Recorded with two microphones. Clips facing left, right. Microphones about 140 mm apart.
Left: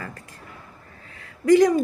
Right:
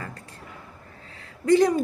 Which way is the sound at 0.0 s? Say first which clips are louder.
Left 1 dB; 30° right (ahead or behind).